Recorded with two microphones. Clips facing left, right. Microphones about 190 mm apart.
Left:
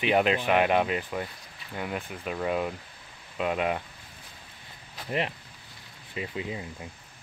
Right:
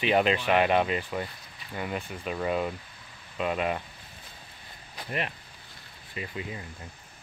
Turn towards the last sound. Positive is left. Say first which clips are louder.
# left 3 dB
turn(degrees=15)  # may be behind; listen again after turning